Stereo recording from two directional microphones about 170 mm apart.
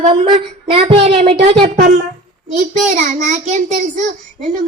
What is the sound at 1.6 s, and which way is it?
Speech, 50° right (ahead or behind).